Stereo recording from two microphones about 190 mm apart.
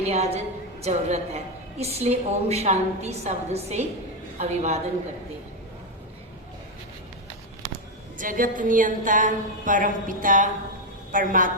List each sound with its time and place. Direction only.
0.0 s a woman's voice: 35° right (ahead or behind)
8.2 s a woman's voice: 45° right (ahead or behind)